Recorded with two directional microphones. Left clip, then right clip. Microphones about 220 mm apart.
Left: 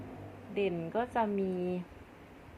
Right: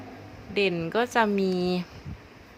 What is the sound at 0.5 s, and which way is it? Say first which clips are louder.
Speech: right 8 dB; 30° right (ahead or behind).